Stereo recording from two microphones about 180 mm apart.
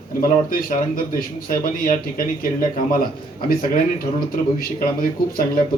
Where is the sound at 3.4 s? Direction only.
55° left (ahead or behind).